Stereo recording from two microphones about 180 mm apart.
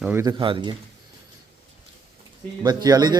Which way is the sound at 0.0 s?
10° right (ahead or behind).